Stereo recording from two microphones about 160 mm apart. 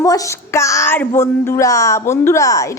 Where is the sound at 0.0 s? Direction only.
20° left (ahead or behind).